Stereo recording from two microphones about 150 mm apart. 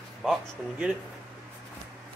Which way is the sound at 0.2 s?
5° right (ahead or behind).